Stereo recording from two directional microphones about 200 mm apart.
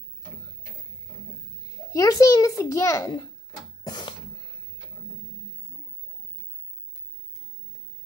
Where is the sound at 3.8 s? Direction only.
20° left (ahead or behind).